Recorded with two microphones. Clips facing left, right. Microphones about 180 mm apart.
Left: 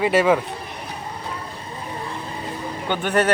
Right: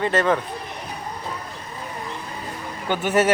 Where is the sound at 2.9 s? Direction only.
5° right (ahead or behind).